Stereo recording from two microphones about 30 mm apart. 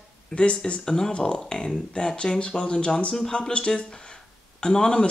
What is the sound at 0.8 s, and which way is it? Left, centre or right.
Speech, left.